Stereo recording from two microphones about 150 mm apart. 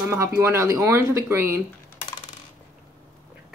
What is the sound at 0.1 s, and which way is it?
Speech, 15° right (ahead or behind).